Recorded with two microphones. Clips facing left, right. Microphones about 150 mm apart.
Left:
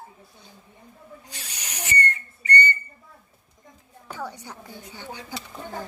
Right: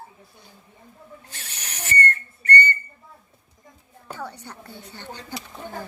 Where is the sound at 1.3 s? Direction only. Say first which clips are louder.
Left 2 dB; 15° left (ahead or behind).